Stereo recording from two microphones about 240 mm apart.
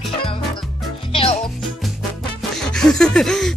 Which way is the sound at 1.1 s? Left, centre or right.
Left.